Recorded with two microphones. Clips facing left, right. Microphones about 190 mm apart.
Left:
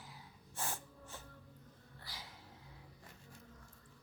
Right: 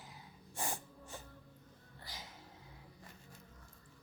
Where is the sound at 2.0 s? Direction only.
20° right (ahead or behind).